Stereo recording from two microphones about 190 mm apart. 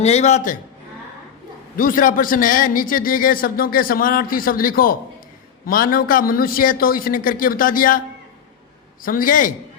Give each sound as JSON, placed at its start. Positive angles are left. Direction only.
{"t": 0.0, "sound": "a man's voice", "side_deg": 35}
{"t": 1.7, "sound": "a man's voice", "side_deg": 45}
{"t": 9.0, "sound": "a man's voice", "side_deg": 45}